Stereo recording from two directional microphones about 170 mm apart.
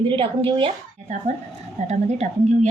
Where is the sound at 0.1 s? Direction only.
30° right (ahead or behind).